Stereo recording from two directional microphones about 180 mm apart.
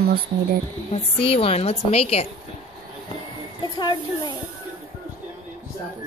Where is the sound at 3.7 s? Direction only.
25° left (ahead or behind).